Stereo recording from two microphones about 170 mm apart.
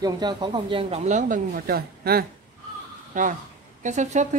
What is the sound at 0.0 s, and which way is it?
Speech, 25° right (ahead or behind).